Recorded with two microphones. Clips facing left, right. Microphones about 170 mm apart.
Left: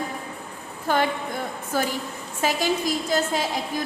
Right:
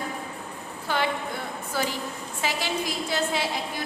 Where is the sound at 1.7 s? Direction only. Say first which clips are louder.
Left 3 dB; 45° left (ahead or behind).